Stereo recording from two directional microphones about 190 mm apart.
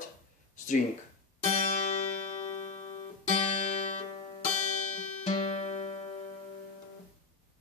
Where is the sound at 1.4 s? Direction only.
35° left (ahead or behind).